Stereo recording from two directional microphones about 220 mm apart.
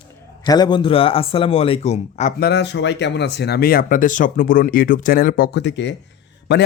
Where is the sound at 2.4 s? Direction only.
50° left (ahead or behind).